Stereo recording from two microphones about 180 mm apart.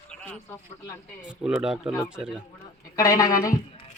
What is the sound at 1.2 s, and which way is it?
A man's voice, 5° right (ahead or behind).